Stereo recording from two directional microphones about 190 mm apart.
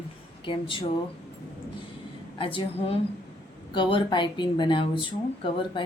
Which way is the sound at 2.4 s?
30° left (ahead or behind).